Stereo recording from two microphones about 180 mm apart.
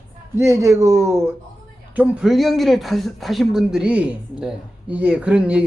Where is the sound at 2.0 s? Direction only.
5° right (ahead or behind).